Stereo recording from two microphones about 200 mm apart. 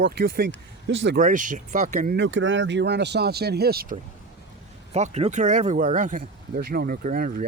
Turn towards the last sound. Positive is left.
turn(degrees=-45)  # may be behind; listen again after turning